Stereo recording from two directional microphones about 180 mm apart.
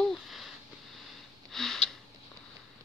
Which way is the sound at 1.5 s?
Centre (ahead or behind).